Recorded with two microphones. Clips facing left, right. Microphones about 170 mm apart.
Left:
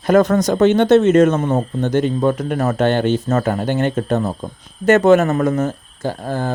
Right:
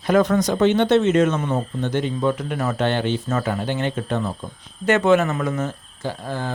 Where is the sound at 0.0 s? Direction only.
45° left (ahead or behind).